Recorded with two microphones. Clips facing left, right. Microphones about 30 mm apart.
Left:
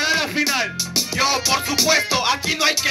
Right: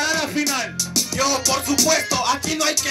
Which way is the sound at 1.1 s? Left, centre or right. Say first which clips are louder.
Left 2 dB; left.